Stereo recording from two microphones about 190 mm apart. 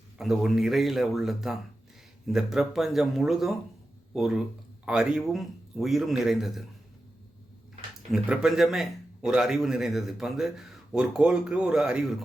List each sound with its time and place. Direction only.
0.2 s a man's voice: centre (ahead or behind)
8.1 s a man's voice: 5° right (ahead or behind)